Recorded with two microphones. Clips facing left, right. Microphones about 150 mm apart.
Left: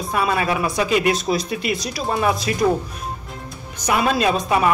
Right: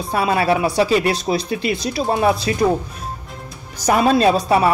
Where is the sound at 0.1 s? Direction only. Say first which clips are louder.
Right 4 dB; 35° right (ahead or behind).